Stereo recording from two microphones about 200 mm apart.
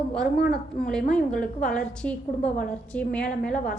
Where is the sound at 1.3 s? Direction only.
45° left (ahead or behind).